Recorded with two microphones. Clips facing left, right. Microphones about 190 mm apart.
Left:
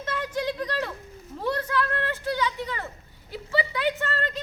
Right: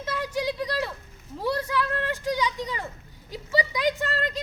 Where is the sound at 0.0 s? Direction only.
10° right (ahead or behind).